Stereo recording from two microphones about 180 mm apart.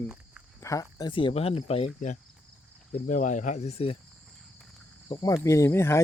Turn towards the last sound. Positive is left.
turn(degrees=15)  # may be behind; listen again after turning